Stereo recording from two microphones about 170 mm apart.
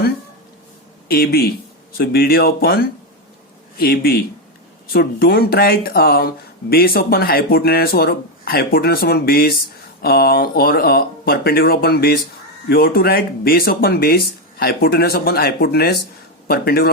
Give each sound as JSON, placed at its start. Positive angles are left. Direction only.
{"t": 1.0, "sound": "speech", "side_deg": 65}
{"t": 3.8, "sound": "speech", "side_deg": 60}